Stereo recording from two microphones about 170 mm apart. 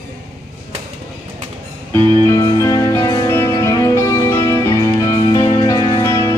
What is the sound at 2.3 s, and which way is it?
Music, 20° left (ahead or behind).